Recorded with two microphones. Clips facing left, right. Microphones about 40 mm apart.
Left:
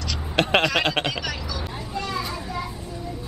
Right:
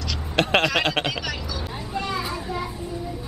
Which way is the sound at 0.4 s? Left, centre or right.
Centre.